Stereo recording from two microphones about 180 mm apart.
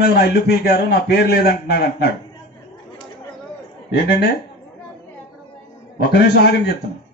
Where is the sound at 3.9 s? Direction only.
65° left (ahead or behind).